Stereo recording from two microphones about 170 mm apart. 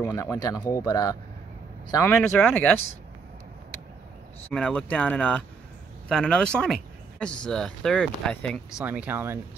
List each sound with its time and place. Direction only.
0.0 s speech: 20° left (ahead or behind)
4.5 s speech: 5° left (ahead or behind)
8.8 s speech: 10° right (ahead or behind)